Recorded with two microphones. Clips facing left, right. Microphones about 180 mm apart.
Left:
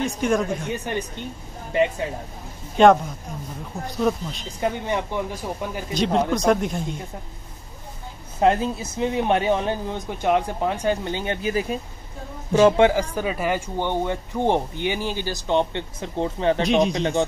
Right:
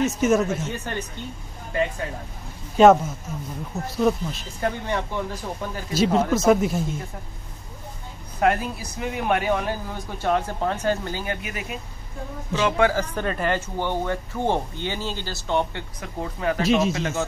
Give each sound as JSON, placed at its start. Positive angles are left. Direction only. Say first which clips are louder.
{"t": 0.0, "sound": "speech", "louder": "right 2 dB", "side_deg": -5}
{"t": 0.7, "sound": "speech", "louder": "left 3 dB", "side_deg": 15}
{"t": 2.8, "sound": "speech", "louder": "right 1 dB", "side_deg": -5}
{"t": 4.6, "sound": "speech", "louder": "left 2 dB", "side_deg": 15}
{"t": 5.9, "sound": "speech", "louder": "right 1 dB", "side_deg": -5}
{"t": 8.4, "sound": "speech", "louder": "left 3 dB", "side_deg": 25}
{"t": 12.9, "sound": "speech", "louder": "left 2 dB", "side_deg": 10}
{"t": 16.6, "sound": "speech", "louder": "right 1 dB", "side_deg": 0}